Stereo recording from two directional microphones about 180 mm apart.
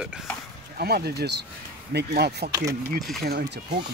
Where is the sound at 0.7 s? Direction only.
60° right (ahead or behind).